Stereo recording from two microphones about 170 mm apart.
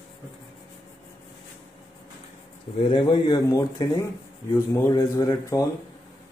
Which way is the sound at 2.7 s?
30° left (ahead or behind).